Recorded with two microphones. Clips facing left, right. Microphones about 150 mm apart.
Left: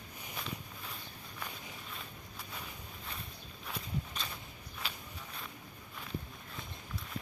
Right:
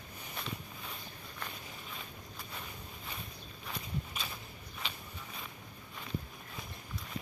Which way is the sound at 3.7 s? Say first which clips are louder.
Left 1 dB; 5° right (ahead or behind).